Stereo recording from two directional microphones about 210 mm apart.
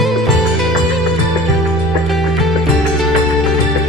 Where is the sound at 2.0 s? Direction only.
Centre (ahead or behind).